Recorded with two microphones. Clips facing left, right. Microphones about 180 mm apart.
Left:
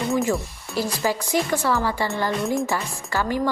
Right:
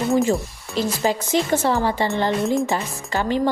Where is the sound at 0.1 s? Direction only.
20° right (ahead or behind).